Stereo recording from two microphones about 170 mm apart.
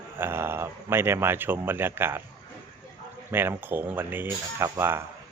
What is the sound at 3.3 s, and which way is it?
Speech, 15° right (ahead or behind).